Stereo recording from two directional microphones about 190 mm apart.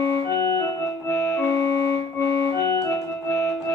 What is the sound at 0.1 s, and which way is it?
Organ, 15° left (ahead or behind).